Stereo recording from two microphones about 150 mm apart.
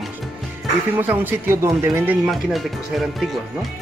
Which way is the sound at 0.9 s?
15° right (ahead or behind).